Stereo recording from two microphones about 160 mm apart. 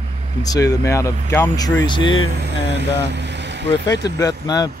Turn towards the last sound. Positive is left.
turn(degrees=25)  # may be behind; listen again after turning